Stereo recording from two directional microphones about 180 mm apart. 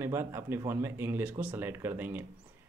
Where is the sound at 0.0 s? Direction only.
15° right (ahead or behind).